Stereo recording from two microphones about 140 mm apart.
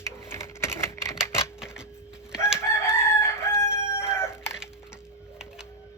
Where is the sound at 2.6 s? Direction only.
15° left (ahead or behind).